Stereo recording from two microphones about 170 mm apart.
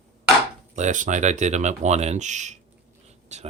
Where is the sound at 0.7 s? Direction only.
45° right (ahead or behind).